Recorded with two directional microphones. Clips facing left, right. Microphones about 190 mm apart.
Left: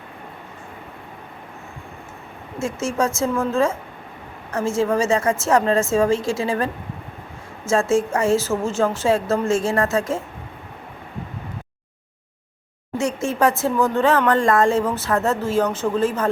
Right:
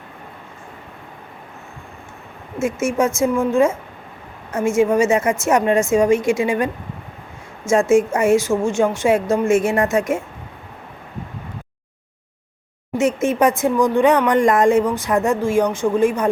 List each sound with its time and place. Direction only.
2.6 s speech: 20° right (ahead or behind)
7.7 s speech: 15° right (ahead or behind)
12.9 s speech: 20° right (ahead or behind)